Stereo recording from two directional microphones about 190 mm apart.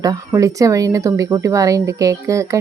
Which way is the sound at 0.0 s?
20° right (ahead or behind).